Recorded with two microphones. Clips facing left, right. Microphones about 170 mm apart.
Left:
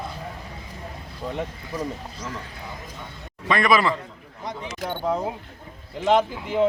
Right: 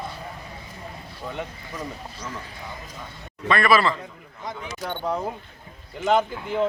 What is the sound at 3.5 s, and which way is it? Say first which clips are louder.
A man's voice: even; 15° left (ahead or behind).